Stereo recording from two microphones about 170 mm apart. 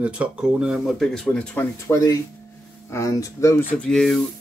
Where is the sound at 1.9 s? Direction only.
20° left (ahead or behind).